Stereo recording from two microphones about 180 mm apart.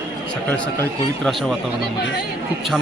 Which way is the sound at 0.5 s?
5° left (ahead or behind).